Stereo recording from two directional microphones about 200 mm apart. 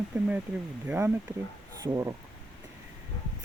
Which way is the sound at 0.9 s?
10° right (ahead or behind).